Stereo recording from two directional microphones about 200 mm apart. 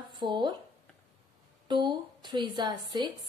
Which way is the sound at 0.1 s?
20° right (ahead or behind).